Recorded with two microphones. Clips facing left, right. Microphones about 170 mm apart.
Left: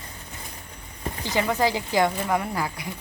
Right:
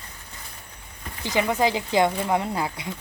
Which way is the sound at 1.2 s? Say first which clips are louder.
Right 1 dB; 20° right (ahead or behind).